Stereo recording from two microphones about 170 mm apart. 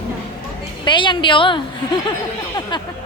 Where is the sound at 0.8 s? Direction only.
30° left (ahead or behind).